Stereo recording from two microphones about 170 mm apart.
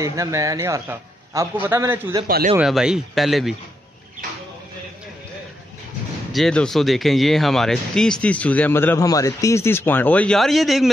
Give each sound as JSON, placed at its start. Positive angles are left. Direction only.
{"t": 0.0, "sound": "a man's voice", "side_deg": -20}
{"t": 2.2, "sound": "speech", "side_deg": -60}
{"t": 2.5, "sound": "speech", "side_deg": -5}
{"t": 6.3, "sound": "speech", "side_deg": 5}